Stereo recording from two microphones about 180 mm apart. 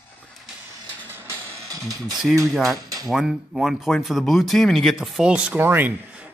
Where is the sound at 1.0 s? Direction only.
10° right (ahead or behind).